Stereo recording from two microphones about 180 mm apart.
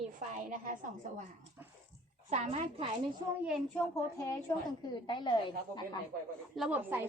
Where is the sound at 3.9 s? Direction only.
15° left (ahead or behind).